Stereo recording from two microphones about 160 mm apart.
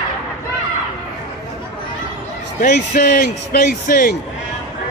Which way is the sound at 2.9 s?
65° left (ahead or behind).